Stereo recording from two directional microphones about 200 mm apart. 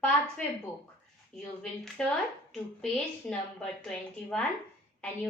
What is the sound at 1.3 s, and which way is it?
Speech, 5° left (ahead or behind).